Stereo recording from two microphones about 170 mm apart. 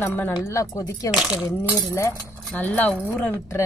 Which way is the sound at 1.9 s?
15° left (ahead or behind).